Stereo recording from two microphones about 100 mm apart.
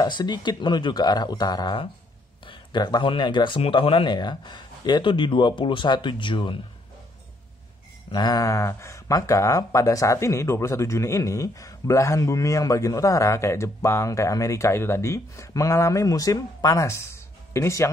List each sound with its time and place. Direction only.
0.0 s speech: 45° left (ahead or behind)
2.4 s a sound: 45° left (ahead or behind)
3.1 s speech: 50° left (ahead or behind)
8.1 s speech: 45° left (ahead or behind)